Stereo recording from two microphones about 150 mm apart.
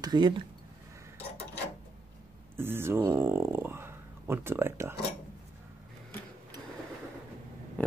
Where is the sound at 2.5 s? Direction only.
15° right (ahead or behind).